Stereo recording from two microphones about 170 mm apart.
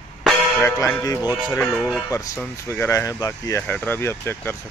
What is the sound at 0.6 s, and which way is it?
Speech, 15° left (ahead or behind).